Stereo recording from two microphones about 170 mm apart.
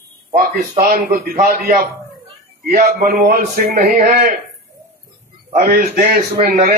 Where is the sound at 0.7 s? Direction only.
55° right (ahead or behind).